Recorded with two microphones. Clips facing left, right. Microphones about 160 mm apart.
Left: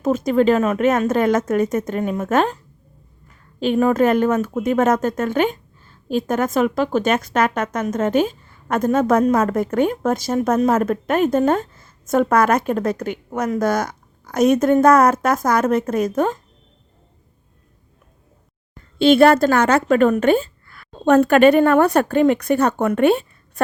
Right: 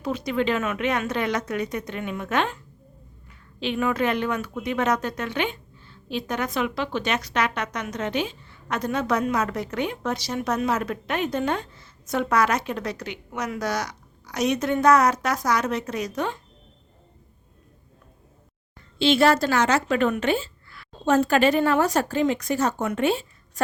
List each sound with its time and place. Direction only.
0.0 s a woman's voice: 45° left (ahead or behind)
18.9 s a woman's voice: 55° left (ahead or behind)